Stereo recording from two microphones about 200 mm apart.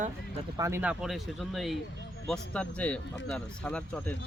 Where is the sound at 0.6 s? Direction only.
15° right (ahead or behind).